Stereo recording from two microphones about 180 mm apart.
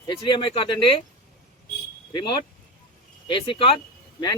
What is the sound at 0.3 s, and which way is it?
Speech, 30° left (ahead or behind).